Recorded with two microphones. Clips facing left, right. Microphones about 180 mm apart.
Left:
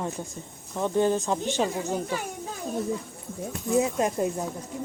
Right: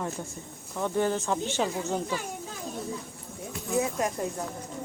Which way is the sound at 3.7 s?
20° left (ahead or behind).